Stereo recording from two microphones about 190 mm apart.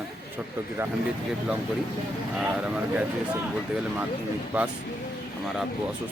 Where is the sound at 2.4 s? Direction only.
5° right (ahead or behind).